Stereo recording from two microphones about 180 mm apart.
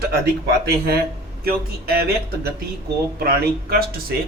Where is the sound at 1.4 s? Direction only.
55° right (ahead or behind).